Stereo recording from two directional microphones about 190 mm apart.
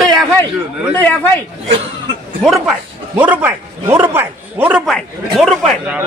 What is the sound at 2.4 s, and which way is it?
A man's voice, centre (ahead or behind).